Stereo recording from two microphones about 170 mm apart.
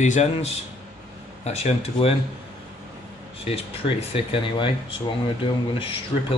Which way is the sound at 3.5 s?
40° left (ahead or behind).